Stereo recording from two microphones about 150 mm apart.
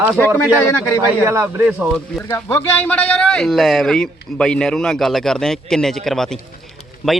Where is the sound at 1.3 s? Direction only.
15° right (ahead or behind).